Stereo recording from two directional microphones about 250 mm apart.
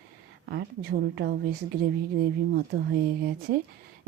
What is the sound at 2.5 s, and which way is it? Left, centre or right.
Speech, right.